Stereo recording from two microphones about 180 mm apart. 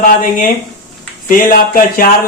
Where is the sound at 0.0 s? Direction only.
50° left (ahead or behind).